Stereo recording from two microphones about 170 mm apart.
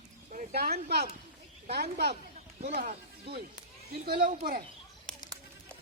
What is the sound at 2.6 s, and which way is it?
Speech, 60° right (ahead or behind).